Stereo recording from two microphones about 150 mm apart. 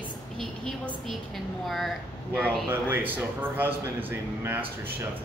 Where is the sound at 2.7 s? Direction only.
15° right (ahead or behind).